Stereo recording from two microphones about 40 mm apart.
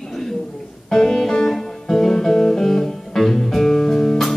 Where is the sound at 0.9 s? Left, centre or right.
Centre.